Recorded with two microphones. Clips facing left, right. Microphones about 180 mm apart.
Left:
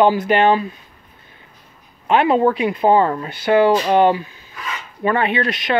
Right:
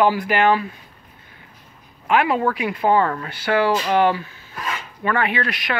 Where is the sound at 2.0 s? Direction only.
25° left (ahead or behind).